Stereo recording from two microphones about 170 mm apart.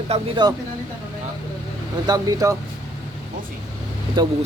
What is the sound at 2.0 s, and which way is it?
Speech, 20° right (ahead or behind).